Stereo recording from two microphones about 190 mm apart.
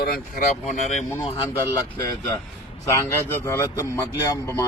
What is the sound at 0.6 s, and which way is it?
Speech, 35° left (ahead or behind).